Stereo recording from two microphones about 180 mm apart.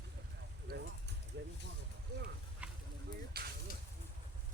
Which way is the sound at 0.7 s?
55° right (ahead or behind).